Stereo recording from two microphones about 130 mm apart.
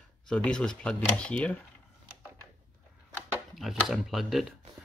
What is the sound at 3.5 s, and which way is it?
Speech, centre (ahead or behind).